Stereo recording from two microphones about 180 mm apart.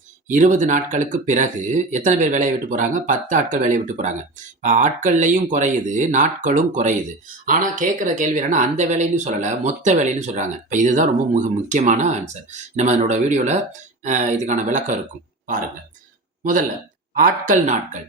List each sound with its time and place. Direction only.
0.3 s speech: 45° right (ahead or behind)